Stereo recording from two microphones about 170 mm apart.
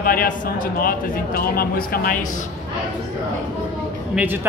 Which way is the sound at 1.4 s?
60° left (ahead or behind).